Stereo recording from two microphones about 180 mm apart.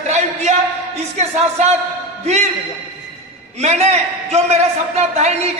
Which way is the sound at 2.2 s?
40° right (ahead or behind).